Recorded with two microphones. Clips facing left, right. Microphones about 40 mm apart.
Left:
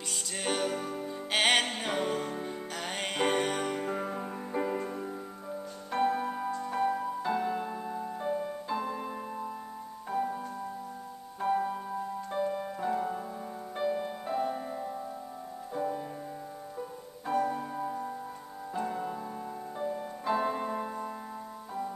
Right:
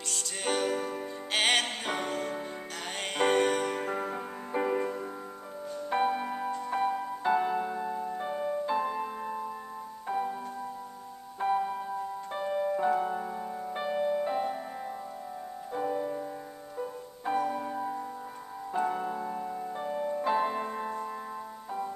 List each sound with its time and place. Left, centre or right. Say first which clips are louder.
0.1 s music: right 2 dB; centre
0.7 s music: right 2 dB; centre
1.3 s music: left 1 dB; centre
8.2 s music: right 1 dB; right
11.4 s music: right 1 dB; centre
15.7 s music: right 2 dB; centre
17.3 s music: even; right
17.7 s music: right 1 dB; centre
18.7 s music: right 4 dB; centre